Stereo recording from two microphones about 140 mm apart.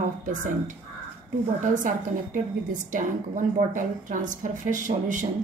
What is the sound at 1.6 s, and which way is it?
A woman's voice, 70° right (ahead or behind).